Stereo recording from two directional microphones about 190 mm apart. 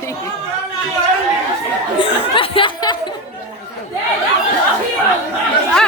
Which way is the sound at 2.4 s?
25° left (ahead or behind).